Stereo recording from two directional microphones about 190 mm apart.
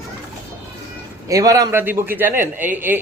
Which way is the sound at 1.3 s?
15° right (ahead or behind).